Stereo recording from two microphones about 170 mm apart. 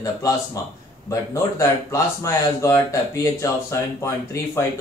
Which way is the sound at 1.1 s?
20° left (ahead or behind).